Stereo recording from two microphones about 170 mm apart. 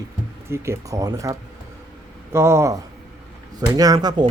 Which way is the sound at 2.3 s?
15° right (ahead or behind).